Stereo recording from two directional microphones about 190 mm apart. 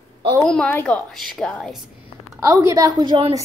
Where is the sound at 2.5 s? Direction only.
15° right (ahead or behind).